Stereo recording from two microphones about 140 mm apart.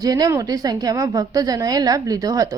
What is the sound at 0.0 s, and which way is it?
A woman's voice, 25° right (ahead or behind).